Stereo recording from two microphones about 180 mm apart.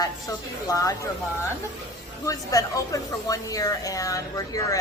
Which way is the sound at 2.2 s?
20° left (ahead or behind).